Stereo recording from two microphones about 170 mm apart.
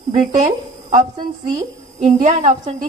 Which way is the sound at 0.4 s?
45° right (ahead or behind).